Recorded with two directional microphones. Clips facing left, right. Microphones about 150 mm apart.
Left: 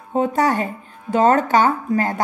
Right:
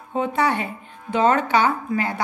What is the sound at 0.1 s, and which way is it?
A woman's voice, 40° left (ahead or behind).